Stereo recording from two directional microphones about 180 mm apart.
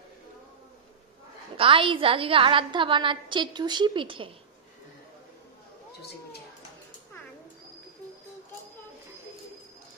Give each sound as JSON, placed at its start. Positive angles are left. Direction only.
{"t": 1.6, "sound": "a woman's voice", "side_deg": -30}